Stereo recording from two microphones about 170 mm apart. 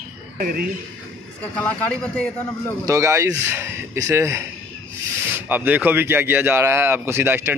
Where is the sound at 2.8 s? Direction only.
15° right (ahead or behind).